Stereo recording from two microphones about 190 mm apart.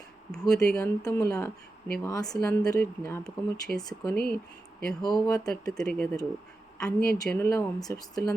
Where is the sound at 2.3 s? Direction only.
5° left (ahead or behind).